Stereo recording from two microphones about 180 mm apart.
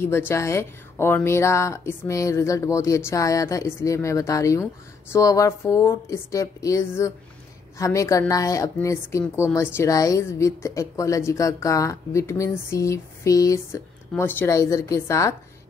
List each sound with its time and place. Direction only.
0.0 s a woman's voice: 15° left (ahead or behind)